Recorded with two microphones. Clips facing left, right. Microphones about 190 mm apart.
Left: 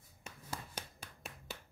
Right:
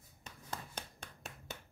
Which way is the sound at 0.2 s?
10° left (ahead or behind).